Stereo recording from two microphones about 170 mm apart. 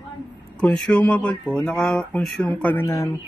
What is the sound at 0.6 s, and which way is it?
Speech, 5° left (ahead or behind).